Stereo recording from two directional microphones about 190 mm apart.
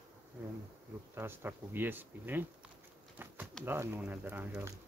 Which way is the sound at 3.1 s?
10° right (ahead or behind).